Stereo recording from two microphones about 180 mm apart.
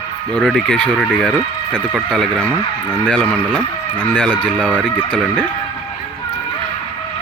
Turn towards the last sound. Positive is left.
turn(degrees=5)  # may be behind; listen again after turning